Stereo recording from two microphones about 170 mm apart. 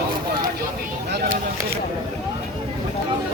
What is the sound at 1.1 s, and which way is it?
Speech, 80° right.